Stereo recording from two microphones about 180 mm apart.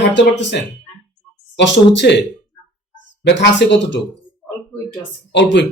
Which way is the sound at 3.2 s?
75° left (ahead or behind).